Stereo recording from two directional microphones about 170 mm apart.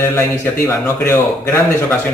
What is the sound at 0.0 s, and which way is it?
Speech, 15° left (ahead or behind).